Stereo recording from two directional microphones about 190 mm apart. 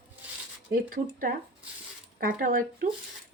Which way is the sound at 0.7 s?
50° right (ahead or behind).